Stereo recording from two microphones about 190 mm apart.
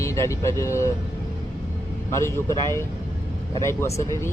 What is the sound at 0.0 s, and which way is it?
Speech, 15° left (ahead or behind).